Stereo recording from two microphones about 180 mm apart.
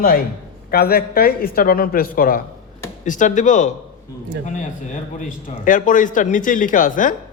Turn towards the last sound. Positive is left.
turn(degrees=45)  # may be behind; listen again after turning